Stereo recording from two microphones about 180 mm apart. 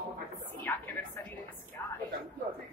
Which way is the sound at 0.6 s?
10° left (ahead or behind).